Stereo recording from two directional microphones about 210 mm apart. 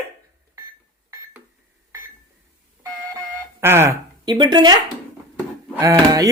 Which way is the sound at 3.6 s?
10° right (ahead or behind).